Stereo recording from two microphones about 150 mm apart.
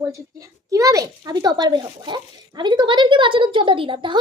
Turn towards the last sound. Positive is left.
turn(degrees=-35)  # may be behind; listen again after turning